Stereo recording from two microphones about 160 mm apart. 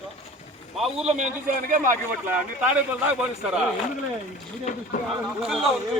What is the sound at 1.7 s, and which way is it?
Speech, 55° right (ahead or behind).